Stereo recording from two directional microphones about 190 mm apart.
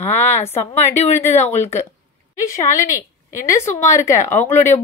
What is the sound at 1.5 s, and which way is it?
Speech, 35° left (ahead or behind).